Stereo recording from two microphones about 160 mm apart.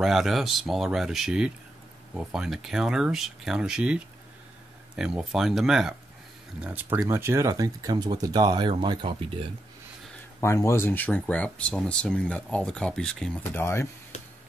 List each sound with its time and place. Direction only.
0.0 s speech: centre (ahead or behind); by 9.5 s 30° right (ahead or behind)
10.4 s speech: 20° left (ahead or behind)
13.6 s speech: 15° left (ahead or behind)